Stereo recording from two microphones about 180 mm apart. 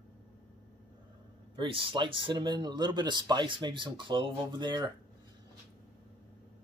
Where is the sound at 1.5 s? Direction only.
30° right (ahead or behind).